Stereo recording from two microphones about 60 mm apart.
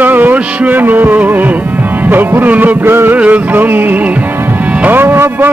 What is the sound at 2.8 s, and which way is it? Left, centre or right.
Music, right.